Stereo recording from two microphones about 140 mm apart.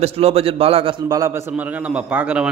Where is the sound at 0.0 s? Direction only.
45° right (ahead or behind); by 1.4 s 25° right (ahead or behind).